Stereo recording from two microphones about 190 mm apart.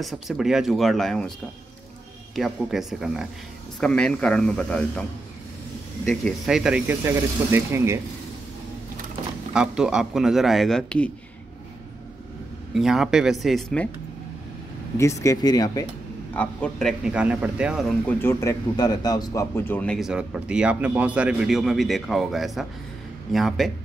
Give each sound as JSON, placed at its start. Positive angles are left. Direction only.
{"t": 0.0, "sound": "speech", "side_deg": 0}
{"t": 2.3, "sound": "speech", "side_deg": 0}
{"t": 6.0, "sound": "speech", "side_deg": 0}
{"t": 9.5, "sound": "speech", "side_deg": -5}
{"t": 12.7, "sound": "speech", "side_deg": 0}
{"t": 15.0, "sound": "speech", "side_deg": 15}
{"t": 16.3, "sound": "speech", "side_deg": 5}
{"t": 18.2, "sound": "speech", "side_deg": 15}